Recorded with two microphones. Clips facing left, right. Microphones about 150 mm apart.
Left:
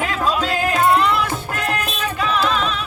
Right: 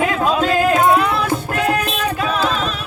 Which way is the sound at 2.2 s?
45° right (ahead or behind).